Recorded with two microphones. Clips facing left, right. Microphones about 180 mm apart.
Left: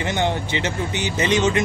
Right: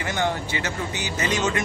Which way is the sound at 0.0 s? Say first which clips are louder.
Left 3 dB; 20° left (ahead or behind).